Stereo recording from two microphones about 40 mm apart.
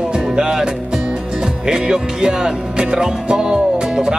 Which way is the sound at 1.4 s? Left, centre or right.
Centre.